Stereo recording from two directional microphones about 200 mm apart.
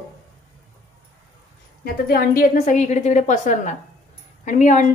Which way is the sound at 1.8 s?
50° left (ahead or behind).